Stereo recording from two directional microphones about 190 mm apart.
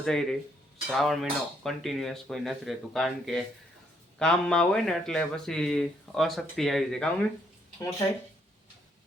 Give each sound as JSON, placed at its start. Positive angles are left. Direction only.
{"t": 0.0, "sound": "speech", "side_deg": 5}
{"t": 7.8, "sound": "speech", "side_deg": 15}